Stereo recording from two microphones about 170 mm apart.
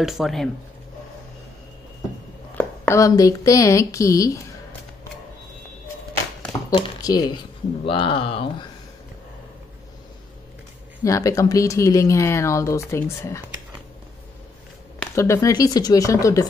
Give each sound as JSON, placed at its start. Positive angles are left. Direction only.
{"t": 0.0, "sound": "speech", "side_deg": 0}
{"t": 2.5, "sound": "a woman's voice", "side_deg": 15}
{"t": 6.7, "sound": "speech", "side_deg": 25}
{"t": 11.1, "sound": "speech", "side_deg": 20}
{"t": 15.1, "sound": "speech", "side_deg": 15}